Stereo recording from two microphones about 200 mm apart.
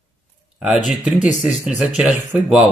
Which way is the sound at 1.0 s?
Centre (ahead or behind).